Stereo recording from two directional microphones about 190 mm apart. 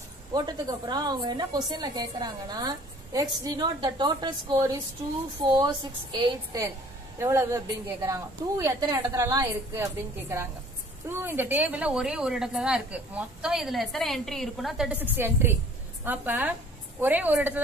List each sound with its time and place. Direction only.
0.3 s a woman's voice: 20° right (ahead or behind)